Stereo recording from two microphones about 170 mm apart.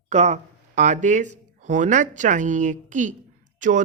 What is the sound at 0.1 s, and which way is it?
A man's voice, 45° right (ahead or behind).